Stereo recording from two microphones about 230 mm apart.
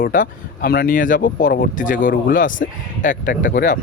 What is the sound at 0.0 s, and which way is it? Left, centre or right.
Speech, left.